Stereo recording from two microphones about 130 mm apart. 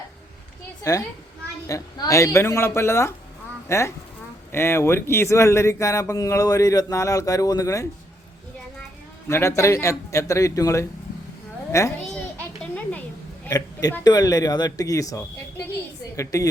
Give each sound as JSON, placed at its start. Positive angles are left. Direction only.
{"t": 0.9, "sound": "speech", "side_deg": 25}
{"t": 9.3, "sound": "speech", "side_deg": 20}
{"t": 12.7, "sound": "a sound", "side_deg": 10}
{"t": 14.0, "sound": "speech", "side_deg": 30}